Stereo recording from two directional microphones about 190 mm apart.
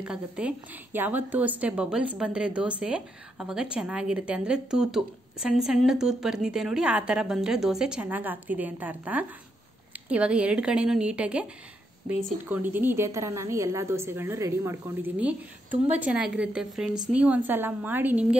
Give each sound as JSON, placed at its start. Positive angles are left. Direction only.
{"t": 0.0, "sound": "a woman's voice", "side_deg": -5}
{"t": 12.1, "sound": "speech", "side_deg": -45}
{"t": 12.4, "sound": "a woman's voice", "side_deg": -10}